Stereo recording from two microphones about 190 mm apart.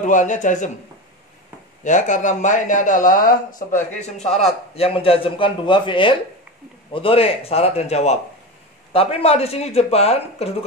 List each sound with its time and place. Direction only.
0.0 s speech: 40° left (ahead or behind)
1.9 s speech: 40° left (ahead or behind)